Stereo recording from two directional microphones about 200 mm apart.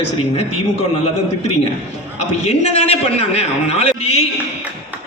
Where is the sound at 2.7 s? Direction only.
30° left (ahead or behind).